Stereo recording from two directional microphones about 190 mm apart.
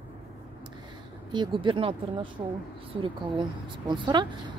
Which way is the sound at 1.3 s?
25° right (ahead or behind).